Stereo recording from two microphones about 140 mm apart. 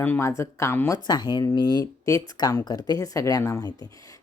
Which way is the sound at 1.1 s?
30° left (ahead or behind).